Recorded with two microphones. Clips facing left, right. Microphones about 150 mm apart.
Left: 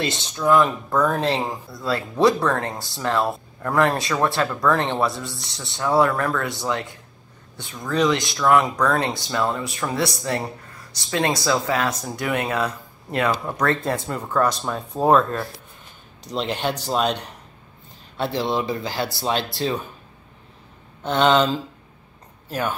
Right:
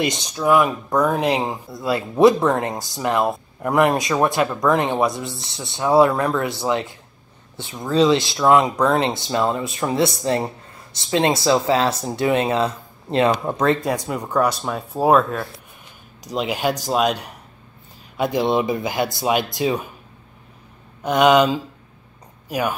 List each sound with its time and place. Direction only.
0.0 s speech: 15° right (ahead or behind)
13.8 s speech: 10° right (ahead or behind)
21.0 s speech: 10° right (ahead or behind)